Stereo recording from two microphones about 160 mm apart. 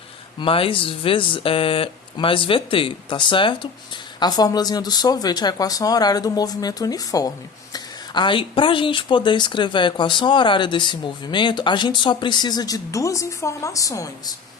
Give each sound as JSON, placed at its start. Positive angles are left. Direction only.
{"t": 0.3, "sound": "speech", "side_deg": 35}